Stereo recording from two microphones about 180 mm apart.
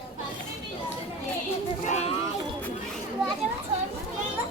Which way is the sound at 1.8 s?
40° left (ahead or behind).